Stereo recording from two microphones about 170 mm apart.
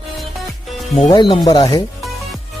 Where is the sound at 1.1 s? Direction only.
25° left (ahead or behind).